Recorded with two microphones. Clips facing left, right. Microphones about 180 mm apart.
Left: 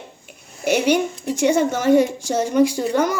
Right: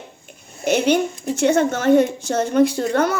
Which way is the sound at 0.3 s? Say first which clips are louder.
Even; 10° left (ahead or behind).